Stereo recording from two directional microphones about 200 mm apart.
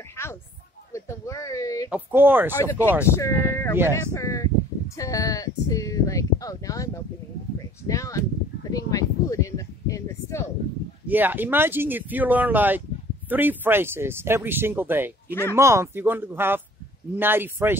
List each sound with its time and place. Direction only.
0.9 s speech: 15° left (ahead or behind)
1.9 s speech: 10° right (ahead or behind)
2.5 s speech: 15° left (ahead or behind)
7.9 s speech: 15° left (ahead or behind)
11.1 s speech: 10° right (ahead or behind)